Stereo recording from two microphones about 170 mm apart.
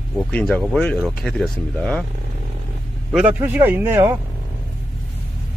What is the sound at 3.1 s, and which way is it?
Speech, 10° right (ahead or behind).